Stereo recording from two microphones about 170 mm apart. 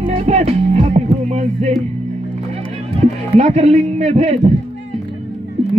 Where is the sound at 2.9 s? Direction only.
40° right (ahead or behind).